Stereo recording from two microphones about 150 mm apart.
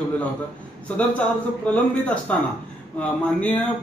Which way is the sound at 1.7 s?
10° left (ahead or behind).